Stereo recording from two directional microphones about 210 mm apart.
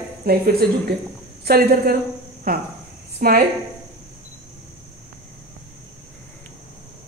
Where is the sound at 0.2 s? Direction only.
45° right (ahead or behind).